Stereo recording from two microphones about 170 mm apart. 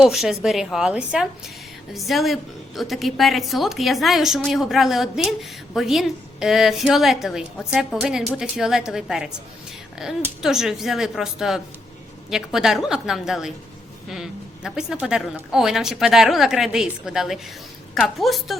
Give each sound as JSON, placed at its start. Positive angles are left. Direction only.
{"t": 0.0, "sound": "a woman's voice", "side_deg": 0}
{"t": 10.4, "sound": "a woman's voice", "side_deg": -5}